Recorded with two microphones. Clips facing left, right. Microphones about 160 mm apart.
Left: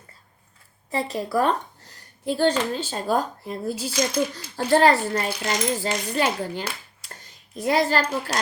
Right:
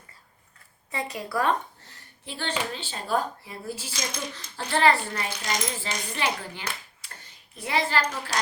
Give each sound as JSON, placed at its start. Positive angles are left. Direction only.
{"t": 0.9, "sound": "speech", "side_deg": 40}